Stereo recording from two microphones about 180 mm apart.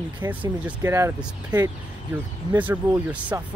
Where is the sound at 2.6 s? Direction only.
10° right (ahead or behind).